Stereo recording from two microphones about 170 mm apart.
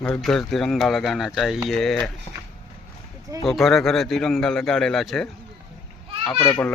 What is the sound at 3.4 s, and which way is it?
A man's voice, centre (ahead or behind).